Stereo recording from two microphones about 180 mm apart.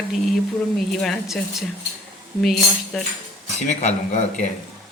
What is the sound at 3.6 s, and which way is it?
Speech, 40° left (ahead or behind).